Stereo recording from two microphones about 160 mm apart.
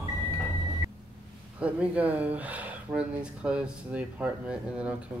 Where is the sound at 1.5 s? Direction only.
10° right (ahead or behind).